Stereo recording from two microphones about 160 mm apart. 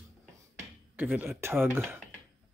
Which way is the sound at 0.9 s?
10° right (ahead or behind).